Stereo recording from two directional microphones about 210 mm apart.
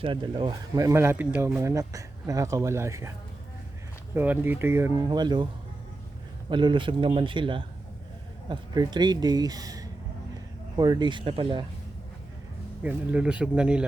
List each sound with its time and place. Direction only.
0.0 s speech: 25° right (ahead or behind)
4.1 s speech: 10° right (ahead or behind)
6.5 s speech: 25° right (ahead or behind)
12.8 s speech: 5° right (ahead or behind)